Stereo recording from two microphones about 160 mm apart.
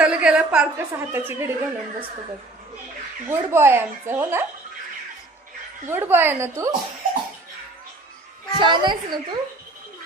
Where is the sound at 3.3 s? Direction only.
15° right (ahead or behind).